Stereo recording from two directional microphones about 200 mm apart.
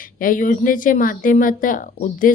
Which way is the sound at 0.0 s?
45° left (ahead or behind).